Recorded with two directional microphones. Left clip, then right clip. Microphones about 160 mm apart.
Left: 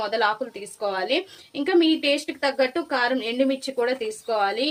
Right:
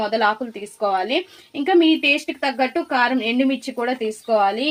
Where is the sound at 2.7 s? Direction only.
40° right (ahead or behind).